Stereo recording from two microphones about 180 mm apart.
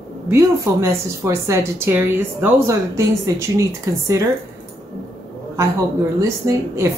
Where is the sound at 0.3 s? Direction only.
15° right (ahead or behind).